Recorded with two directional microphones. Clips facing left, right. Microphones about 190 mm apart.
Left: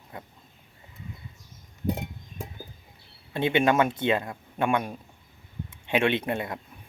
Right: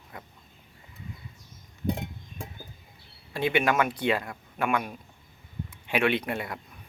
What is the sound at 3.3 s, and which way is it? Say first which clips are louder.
Speech: left 2 dB; 25° left (ahead or behind).